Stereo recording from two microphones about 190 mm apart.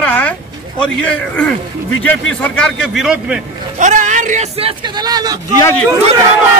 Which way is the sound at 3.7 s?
40° right (ahead or behind).